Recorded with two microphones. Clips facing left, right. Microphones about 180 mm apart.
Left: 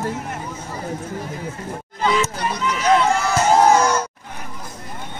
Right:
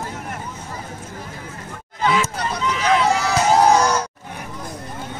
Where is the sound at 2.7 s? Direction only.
Centre (ahead or behind).